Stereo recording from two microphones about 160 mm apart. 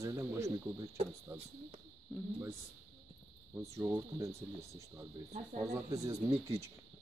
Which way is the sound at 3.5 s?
15° right (ahead or behind).